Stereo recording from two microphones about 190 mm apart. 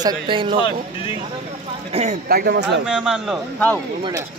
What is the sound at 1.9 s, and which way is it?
Speech, 35° right (ahead or behind).